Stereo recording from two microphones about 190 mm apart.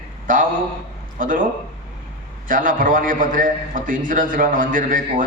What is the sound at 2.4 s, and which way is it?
A man's voice, 45° right (ahead or behind).